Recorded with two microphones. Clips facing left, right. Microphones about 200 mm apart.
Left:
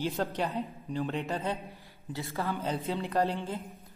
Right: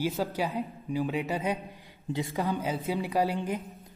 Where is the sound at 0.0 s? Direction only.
5° right (ahead or behind).